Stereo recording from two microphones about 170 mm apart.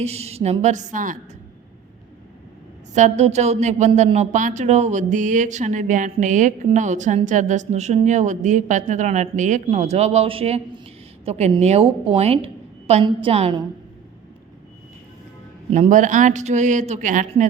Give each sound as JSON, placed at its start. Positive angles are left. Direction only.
{"t": 0.0, "sound": "a woman's voice", "side_deg": -35}
{"t": 2.9, "sound": "a woman's voice", "side_deg": -40}
{"t": 15.7, "sound": "speech", "side_deg": -45}